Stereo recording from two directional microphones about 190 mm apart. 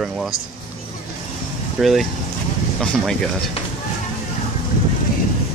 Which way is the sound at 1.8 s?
Centre (ahead or behind).